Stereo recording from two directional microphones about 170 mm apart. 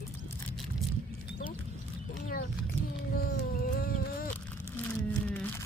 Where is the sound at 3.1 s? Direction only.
60° left (ahead or behind).